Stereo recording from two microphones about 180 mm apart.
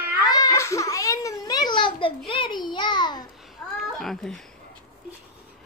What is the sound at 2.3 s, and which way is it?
Speech, 25° left (ahead or behind).